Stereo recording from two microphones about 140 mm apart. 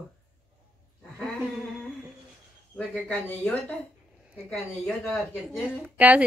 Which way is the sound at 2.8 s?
10° left (ahead or behind).